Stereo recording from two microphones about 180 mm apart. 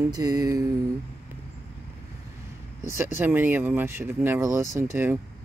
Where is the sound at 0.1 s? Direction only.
20° right (ahead or behind).